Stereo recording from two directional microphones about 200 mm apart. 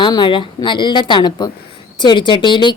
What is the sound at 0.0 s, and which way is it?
Speech, 20° left (ahead or behind).